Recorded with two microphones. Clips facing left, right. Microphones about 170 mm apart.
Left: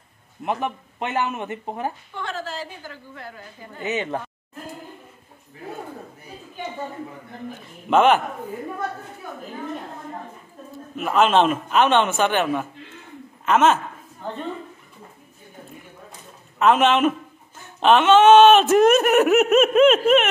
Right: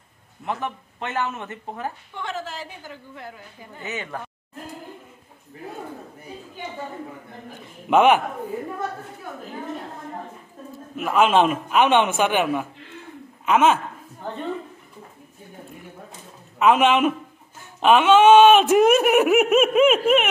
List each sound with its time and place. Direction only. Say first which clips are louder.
0.5 s speech: left 3 dB; 15° left (ahead or behind)
2.1 s a woman's voice: left 1 dB; 20° right (ahead or behind)
3.8 s speech: left 6 dB; 20° left (ahead or behind)
7.9 s speech: even; 10° right (ahead or behind)
11.0 s speech: even; 5° right (ahead or behind)
16.5 s speech: even; 10° right (ahead or behind)